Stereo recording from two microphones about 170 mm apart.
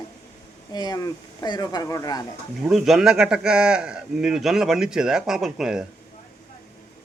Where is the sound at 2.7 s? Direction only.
Centre (ahead or behind).